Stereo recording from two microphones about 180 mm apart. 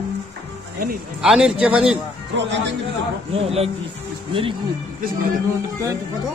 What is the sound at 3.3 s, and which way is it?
Speech, 35° right (ahead or behind).